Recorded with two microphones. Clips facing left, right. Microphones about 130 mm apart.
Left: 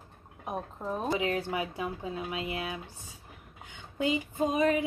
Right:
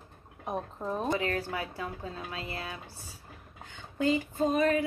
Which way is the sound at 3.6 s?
15° left (ahead or behind).